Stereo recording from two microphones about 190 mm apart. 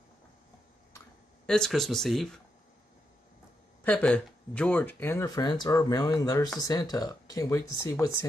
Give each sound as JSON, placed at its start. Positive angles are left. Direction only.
{"t": 1.4, "sound": "speech", "side_deg": 5}
{"t": 3.8, "sound": "speech", "side_deg": 5}